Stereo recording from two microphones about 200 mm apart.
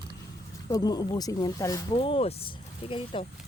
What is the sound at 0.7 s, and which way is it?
Speech, 20° left (ahead or behind).